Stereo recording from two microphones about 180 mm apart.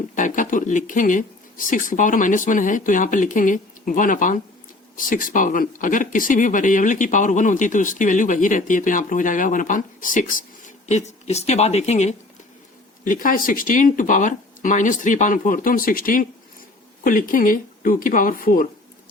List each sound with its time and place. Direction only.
0.2 s a woman's voice: 45° left (ahead or behind)
13.1 s speech: 50° left (ahead or behind)